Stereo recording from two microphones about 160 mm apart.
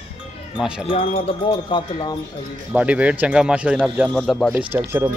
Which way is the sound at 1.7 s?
30° left (ahead or behind).